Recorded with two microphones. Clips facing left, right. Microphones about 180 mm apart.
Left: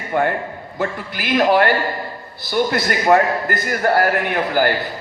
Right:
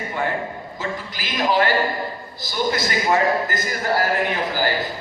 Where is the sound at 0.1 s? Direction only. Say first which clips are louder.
Left 7 dB; 60° left (ahead or behind).